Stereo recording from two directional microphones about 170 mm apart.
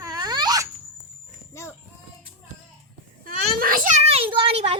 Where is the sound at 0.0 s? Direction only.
25° right (ahead or behind).